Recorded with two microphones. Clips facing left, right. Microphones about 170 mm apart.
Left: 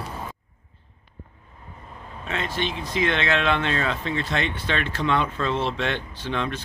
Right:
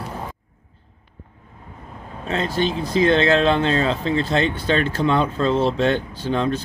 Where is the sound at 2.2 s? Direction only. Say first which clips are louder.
Right 6 dB; 35° right (ahead or behind).